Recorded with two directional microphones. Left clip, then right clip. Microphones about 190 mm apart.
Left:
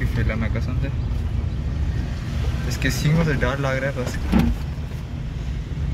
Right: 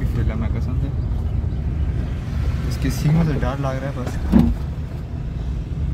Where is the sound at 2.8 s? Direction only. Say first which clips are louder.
Left 1 dB; centre (ahead or behind).